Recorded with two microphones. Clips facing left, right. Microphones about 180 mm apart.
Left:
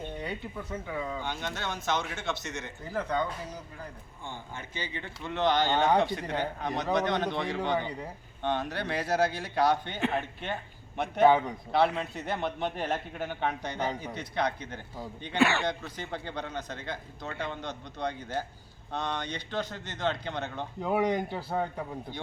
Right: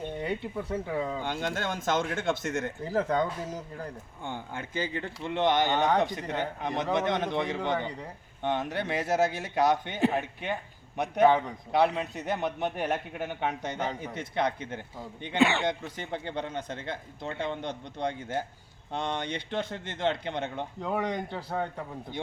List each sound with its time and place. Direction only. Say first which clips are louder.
0.6 s speech: right 3 dB; 30° right (ahead or behind)
1.2 s speech: right 4 dB; 50° right (ahead or behind)
2.8 s speech: right 3 dB; 40° right (ahead or behind)
4.3 s speech: right 5 dB; 55° right (ahead or behind)
4.9 s speech: right 4 dB; 40° right (ahead or behind)
5.3 s a man's voice: right 1 dB; 20° right (ahead or behind)
20.8 s a man's voice: left 4 dB; 5° left (ahead or behind)